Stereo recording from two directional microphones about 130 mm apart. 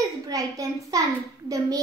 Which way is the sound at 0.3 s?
25° right (ahead or behind).